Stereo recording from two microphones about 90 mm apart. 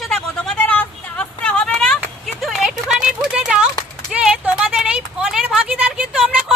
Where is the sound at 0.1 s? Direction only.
10° left (ahead or behind).